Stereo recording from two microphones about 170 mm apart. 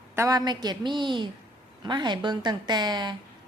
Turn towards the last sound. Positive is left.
turn(degrees=-25)  # may be behind; listen again after turning